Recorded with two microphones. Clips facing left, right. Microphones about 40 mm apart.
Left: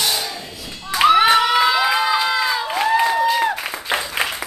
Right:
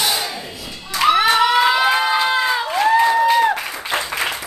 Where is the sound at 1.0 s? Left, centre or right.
Left.